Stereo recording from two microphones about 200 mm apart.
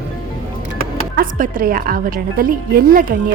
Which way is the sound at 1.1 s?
45° right (ahead or behind).